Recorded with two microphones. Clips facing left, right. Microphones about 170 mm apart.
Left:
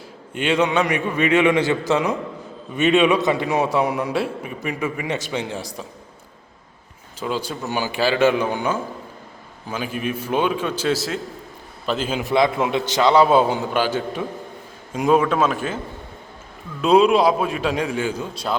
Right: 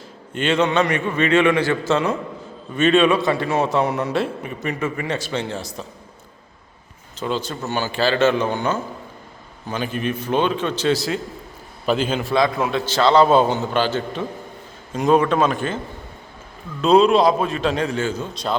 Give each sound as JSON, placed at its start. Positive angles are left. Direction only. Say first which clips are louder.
{"t": 0.3, "sound": "a man's voice", "louder": "right 1 dB", "side_deg": 10}
{"t": 7.2, "sound": "a man's voice", "louder": "right 1 dB", "side_deg": 10}
{"t": 12.2, "sound": "a man's voice", "louder": "left 1 dB", "side_deg": 20}
{"t": 16.8, "sound": "a man's voice", "louder": "right 1 dB", "side_deg": 10}